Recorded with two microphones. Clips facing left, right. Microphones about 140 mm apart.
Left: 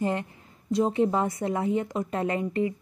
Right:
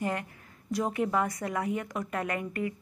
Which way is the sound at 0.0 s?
25° left (ahead or behind).